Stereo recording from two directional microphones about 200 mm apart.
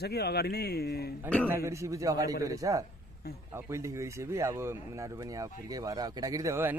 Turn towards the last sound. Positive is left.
turn(degrees=-15)  # may be behind; listen again after turning